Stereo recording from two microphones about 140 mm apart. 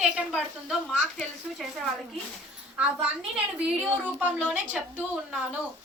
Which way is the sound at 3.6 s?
10° right (ahead or behind).